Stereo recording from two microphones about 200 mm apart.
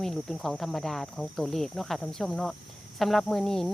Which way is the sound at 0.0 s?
Centre (ahead or behind).